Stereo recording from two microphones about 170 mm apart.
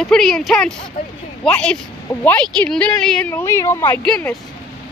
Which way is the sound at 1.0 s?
55° left (ahead or behind).